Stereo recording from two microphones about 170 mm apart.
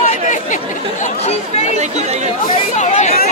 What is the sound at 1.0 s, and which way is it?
Speech, 40° left (ahead or behind).